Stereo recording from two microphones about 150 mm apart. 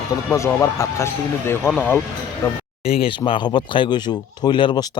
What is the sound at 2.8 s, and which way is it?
Speech, 40° left (ahead or behind).